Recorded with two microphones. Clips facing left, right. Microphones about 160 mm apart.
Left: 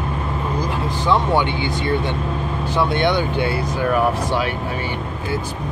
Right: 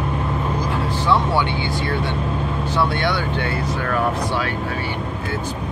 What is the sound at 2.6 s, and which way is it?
Speech, 15° left (ahead or behind).